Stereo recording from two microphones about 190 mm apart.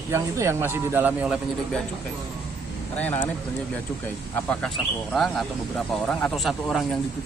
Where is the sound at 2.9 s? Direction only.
10° left (ahead or behind).